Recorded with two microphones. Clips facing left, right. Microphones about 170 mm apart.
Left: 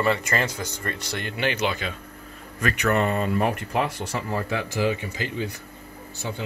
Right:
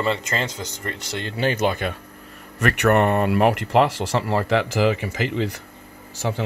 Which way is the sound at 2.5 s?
70° right (ahead or behind).